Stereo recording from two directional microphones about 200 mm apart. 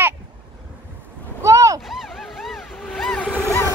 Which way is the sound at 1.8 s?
Centre (ahead or behind).